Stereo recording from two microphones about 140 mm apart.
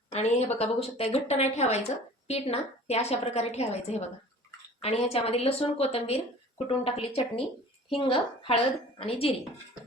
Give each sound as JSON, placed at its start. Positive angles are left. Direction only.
{"t": 0.1, "sound": "a woman's voice", "side_deg": 50}